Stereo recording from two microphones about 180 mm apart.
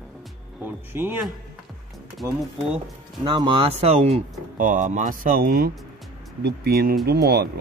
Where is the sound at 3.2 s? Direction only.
25° right (ahead or behind).